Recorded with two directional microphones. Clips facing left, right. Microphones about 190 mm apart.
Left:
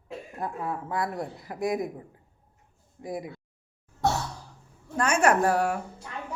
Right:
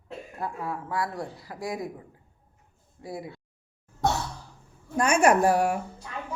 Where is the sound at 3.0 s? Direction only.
20° left (ahead or behind).